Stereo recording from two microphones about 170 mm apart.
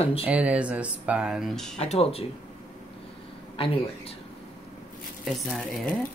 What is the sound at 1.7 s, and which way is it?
Speech, 40° left (ahead or behind).